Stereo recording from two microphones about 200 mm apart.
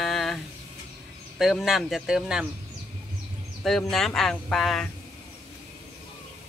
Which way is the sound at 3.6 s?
Centre (ahead or behind).